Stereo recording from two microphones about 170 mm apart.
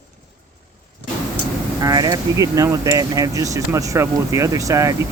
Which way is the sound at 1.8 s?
25° right (ahead or behind).